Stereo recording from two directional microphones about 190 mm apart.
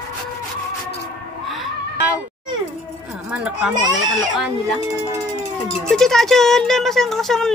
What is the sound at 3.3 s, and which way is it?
Speech, 5° right (ahead or behind).